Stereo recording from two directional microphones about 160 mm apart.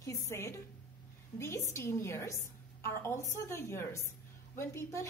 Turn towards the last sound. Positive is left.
turn(degrees=20)  # may be behind; listen again after turning